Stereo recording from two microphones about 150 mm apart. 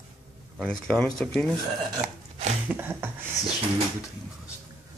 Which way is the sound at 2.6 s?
15° right (ahead or behind).